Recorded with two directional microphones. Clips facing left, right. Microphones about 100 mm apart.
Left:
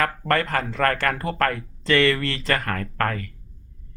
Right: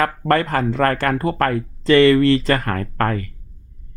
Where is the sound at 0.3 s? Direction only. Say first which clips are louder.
Right 7 dB; 25° right (ahead or behind).